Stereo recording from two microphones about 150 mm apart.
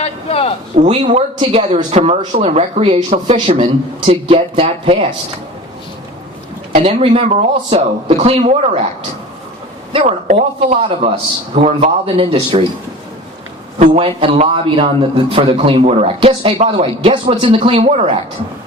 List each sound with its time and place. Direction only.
0.0 s a sound: 40° left (ahead or behind)
0.9 s a man's voice: 45° right (ahead or behind)
6.7 s speech: 40° right (ahead or behind)
9.9 s a man's voice: 45° right (ahead or behind)
13.7 s a man's voice: 45° right (ahead or behind)